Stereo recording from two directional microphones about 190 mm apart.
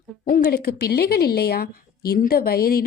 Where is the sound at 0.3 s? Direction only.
50° left (ahead or behind).